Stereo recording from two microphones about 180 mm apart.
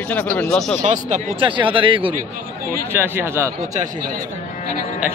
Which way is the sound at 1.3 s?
30° right (ahead or behind).